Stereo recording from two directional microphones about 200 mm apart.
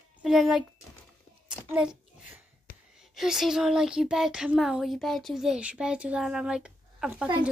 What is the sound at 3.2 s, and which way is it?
A child's voice, centre (ahead or behind).